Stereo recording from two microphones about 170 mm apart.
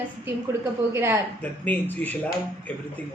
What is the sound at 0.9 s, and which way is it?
Speech, 15° right (ahead or behind).